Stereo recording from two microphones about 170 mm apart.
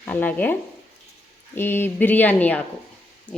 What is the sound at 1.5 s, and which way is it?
A woman's voice, 15° left (ahead or behind).